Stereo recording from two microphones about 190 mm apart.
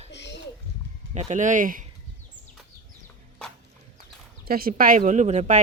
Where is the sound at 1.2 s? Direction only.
40° right (ahead or behind).